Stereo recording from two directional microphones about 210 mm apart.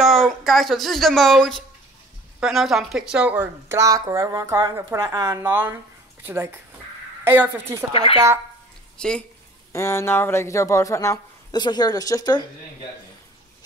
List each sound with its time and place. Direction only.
0.0 s speech: centre (ahead or behind)
7.9 s speech: 25° left (ahead or behind)
8.9 s speech: 5° left (ahead or behind)